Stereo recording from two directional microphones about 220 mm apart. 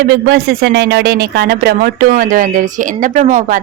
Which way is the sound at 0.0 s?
45° right (ahead or behind).